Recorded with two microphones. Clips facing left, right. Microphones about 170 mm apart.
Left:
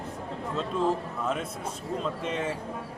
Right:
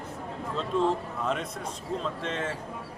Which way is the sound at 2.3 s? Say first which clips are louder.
Left 2 dB; 10° left (ahead or behind).